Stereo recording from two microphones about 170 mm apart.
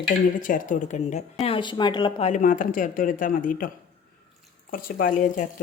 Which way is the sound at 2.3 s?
50° left (ahead or behind).